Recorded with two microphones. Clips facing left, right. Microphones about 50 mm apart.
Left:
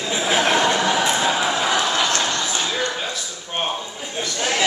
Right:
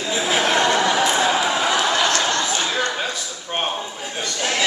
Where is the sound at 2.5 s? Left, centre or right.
Centre.